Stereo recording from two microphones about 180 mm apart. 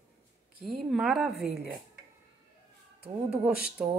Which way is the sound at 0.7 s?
Centre (ahead or behind).